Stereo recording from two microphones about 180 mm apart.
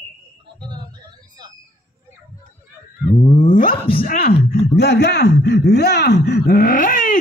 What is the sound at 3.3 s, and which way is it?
Cat, 45° left (ahead or behind).